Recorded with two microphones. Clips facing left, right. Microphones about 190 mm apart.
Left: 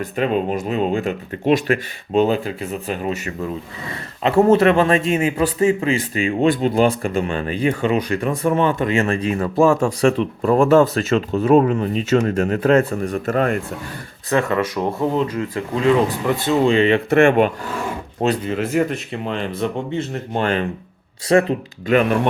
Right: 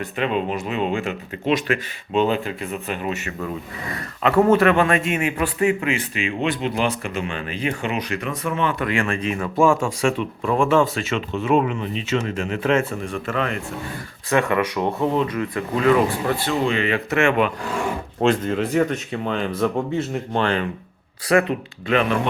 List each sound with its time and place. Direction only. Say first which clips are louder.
0.2 s speech: left 3 dB; 40° left (ahead or behind)
8.8 s speech: left 4 dB; 25° left (ahead or behind)
17.1 s speech: left 4 dB; 55° left (ahead or behind)
18.4 s speech: even; 5° left (ahead or behind)
20.3 s speech: left 2 dB; 45° left (ahead or behind)
21.2 s speech: left 3 dB; 30° left (ahead or behind)
21.8 s speech: left 4 dB; 45° left (ahead or behind)